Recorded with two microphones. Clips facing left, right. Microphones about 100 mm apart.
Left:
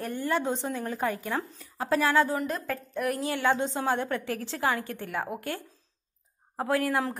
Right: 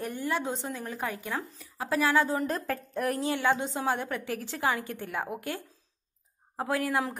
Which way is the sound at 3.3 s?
15° right (ahead or behind).